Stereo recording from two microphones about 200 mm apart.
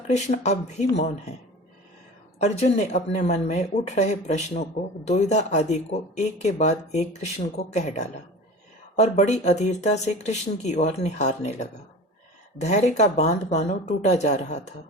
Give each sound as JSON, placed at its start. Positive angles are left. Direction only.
{"t": 0.1, "sound": "speech", "side_deg": 35}
{"t": 2.4, "sound": "speech", "side_deg": 35}